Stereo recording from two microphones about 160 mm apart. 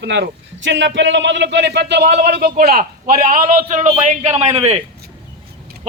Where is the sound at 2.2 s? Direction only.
70° right (ahead or behind); by 4.8 s 40° right (ahead or behind).